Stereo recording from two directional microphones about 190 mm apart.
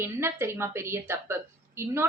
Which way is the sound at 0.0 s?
10° right (ahead or behind).